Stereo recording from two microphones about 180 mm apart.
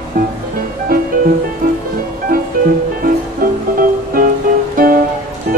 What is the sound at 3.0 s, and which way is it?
Music, 50° right (ahead or behind).